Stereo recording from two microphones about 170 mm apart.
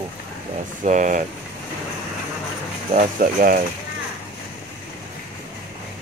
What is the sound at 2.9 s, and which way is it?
Speech, 50° right (ahead or behind).